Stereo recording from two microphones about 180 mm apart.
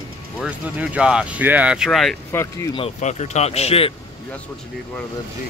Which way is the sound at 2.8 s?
40° left (ahead or behind).